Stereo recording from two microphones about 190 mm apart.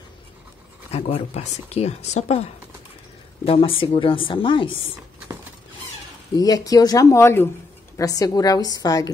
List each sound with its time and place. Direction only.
0.9 s a woman's voice: 35° left (ahead or behind)
6.3 s a woman's voice: 20° left (ahead or behind)